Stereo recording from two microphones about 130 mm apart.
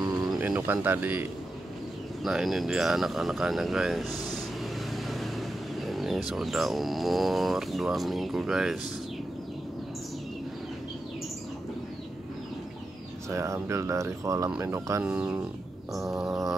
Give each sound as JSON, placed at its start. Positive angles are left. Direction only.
{"t": 0.0, "sound": "bird", "side_deg": -30}
{"t": 0.4, "sound": "speech", "side_deg": -15}
{"t": 2.2, "sound": "speech", "side_deg": -5}
{"t": 13.3, "sound": "speech", "side_deg": -20}
{"t": 15.0, "sound": "speech", "side_deg": -10}